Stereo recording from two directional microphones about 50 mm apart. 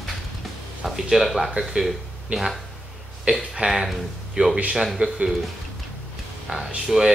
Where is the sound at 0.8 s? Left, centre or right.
Centre.